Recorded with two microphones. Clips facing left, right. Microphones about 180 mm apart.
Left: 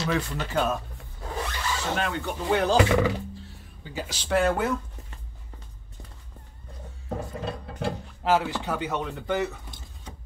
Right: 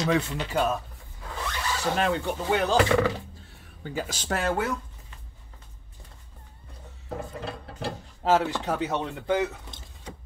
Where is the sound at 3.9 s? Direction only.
50° right (ahead or behind).